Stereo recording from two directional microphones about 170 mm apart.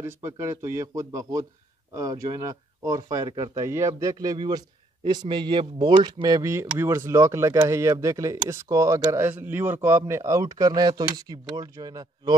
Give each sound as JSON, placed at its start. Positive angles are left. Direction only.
{"t": 0.0, "sound": "a man's voice", "side_deg": -15}